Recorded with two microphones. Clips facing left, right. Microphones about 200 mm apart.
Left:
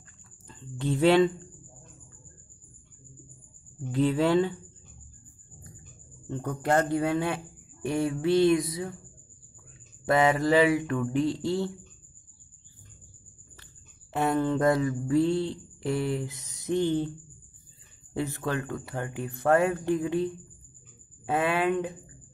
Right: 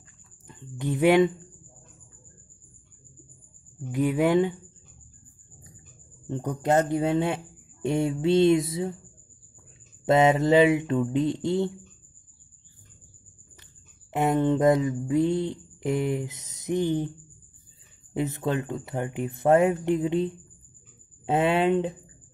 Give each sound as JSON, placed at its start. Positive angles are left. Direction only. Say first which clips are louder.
{"t": 0.5, "sound": "speech", "louder": "even", "side_deg": -15}
{"t": 3.9, "sound": "speech", "louder": "right 1 dB", "side_deg": -15}
{"t": 6.2, "sound": "mantra", "louder": "right 3 dB", "side_deg": -20}
{"t": 10.0, "sound": "mantra", "louder": "right 3 dB", "side_deg": -25}
{"t": 14.1, "sound": "mantra", "louder": "right 3 dB", "side_deg": -20}
{"t": 18.1, "sound": "mantra", "louder": "right 3 dB", "side_deg": -20}